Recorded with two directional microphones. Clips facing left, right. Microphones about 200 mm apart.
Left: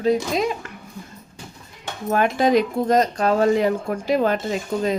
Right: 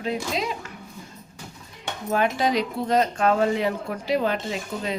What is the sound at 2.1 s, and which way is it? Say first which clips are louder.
Speech: left 5 dB; 50° left (ahead or behind).